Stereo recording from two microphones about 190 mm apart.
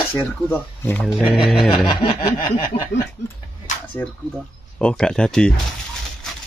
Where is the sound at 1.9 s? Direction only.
25° left (ahead or behind).